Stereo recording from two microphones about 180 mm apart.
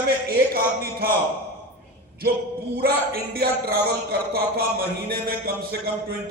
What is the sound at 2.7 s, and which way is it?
A man's voice, 55° right (ahead or behind).